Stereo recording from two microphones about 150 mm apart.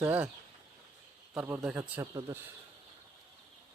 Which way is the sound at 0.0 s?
10° right (ahead or behind).